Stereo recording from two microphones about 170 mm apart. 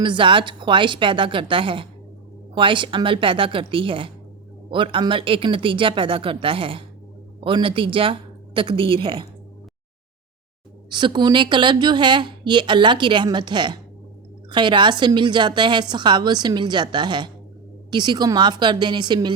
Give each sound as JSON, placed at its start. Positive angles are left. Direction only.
{"t": 0.0, "sound": "a woman's voice", "side_deg": -30}
{"t": 10.8, "sound": "speech", "side_deg": -25}